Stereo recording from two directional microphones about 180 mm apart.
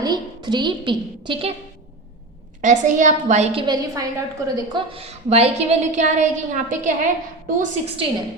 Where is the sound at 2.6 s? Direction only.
45° right (ahead or behind).